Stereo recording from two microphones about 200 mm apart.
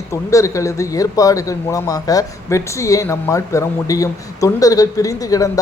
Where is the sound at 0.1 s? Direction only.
15° left (ahead or behind).